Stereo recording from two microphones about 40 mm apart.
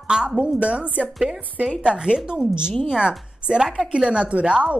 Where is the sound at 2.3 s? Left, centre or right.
Right.